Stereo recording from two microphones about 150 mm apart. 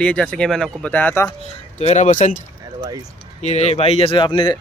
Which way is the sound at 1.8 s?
50° left (ahead or behind).